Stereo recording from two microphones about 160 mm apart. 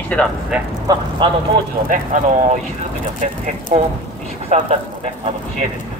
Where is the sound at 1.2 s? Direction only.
30° right (ahead or behind).